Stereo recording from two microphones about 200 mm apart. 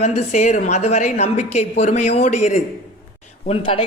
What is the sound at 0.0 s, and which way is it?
A man's voice, 35° left (ahead or behind).